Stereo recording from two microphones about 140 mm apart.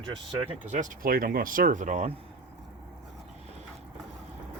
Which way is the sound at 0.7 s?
65° right (ahead or behind).